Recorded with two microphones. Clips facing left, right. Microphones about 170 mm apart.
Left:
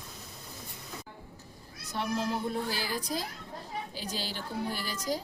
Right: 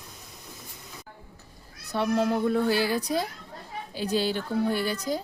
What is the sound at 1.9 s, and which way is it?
Speech, 60° right (ahead or behind).